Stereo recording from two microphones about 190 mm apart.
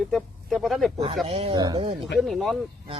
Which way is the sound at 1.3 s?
30° right (ahead or behind).